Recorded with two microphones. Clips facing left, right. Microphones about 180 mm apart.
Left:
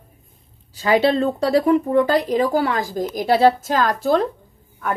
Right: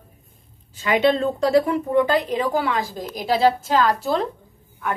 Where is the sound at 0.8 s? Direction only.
35° left (ahead or behind).